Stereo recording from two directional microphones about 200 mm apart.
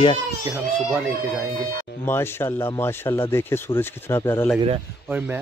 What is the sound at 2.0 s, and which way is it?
Speech, 10° left (ahead or behind).